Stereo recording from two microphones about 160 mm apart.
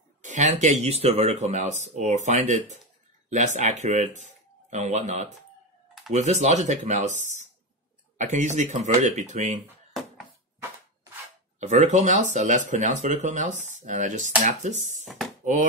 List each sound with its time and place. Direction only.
0.2 s speech: 50° right (ahead or behind)
8.2 s speech: 50° right (ahead or behind)
11.6 s speech: 45° right (ahead or behind)
15.0 s a sound: centre (ahead or behind)